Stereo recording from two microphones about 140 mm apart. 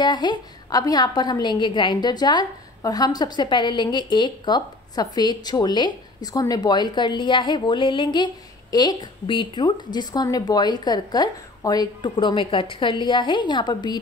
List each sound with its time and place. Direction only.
0.0 s a woman's voice: 30° left (ahead or behind)